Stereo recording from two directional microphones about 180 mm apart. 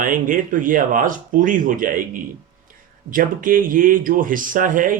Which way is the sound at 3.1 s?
50° right (ahead or behind).